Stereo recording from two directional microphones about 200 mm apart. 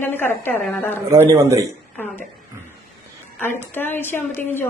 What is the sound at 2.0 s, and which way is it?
Speech, 10° left (ahead or behind).